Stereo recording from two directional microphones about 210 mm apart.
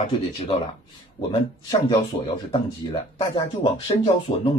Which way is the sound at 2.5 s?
25° left (ahead or behind).